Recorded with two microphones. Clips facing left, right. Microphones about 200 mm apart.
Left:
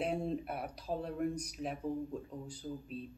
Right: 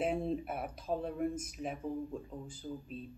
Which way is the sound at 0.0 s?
Centre (ahead or behind).